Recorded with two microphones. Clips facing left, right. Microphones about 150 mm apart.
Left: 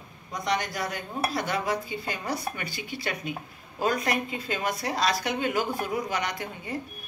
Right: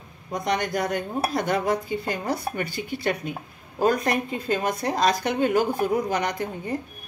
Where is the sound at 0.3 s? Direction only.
50° right (ahead or behind).